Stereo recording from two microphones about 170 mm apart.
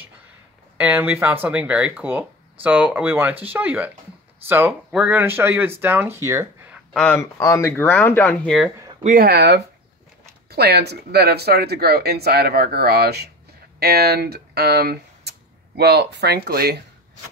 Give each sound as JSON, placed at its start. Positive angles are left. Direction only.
{"t": 0.7, "sound": "speech", "side_deg": -10}
{"t": 6.9, "sound": "speech", "side_deg": 5}
{"t": 7.2, "sound": "speech", "side_deg": 15}
{"t": 9.0, "sound": "speech", "side_deg": -55}
{"t": 16.4, "sound": "speech", "side_deg": -65}